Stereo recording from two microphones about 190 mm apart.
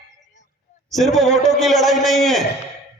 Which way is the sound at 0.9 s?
Centre (ahead or behind).